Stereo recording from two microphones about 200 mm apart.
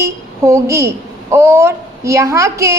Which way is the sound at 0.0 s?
15° right (ahead or behind).